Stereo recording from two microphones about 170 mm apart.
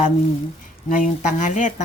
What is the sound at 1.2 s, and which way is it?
Speech, 45° left (ahead or behind).